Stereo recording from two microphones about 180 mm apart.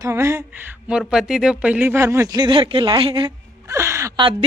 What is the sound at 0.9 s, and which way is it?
Speech, 5° right (ahead or behind).